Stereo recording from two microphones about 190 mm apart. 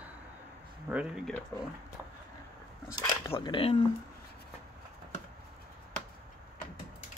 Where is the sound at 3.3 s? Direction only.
25° left (ahead or behind).